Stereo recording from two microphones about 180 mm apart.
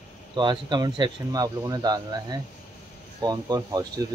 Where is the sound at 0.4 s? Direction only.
25° right (ahead or behind).